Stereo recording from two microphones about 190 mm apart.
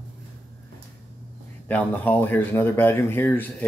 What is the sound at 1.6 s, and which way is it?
Speech, 10° left (ahead or behind).